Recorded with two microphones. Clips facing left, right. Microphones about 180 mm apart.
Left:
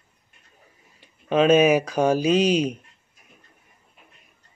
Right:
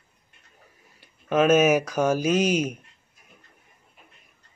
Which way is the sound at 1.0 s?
5° right (ahead or behind).